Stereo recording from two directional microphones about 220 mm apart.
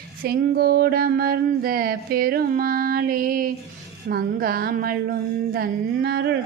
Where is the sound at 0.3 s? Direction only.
45° right (ahead or behind).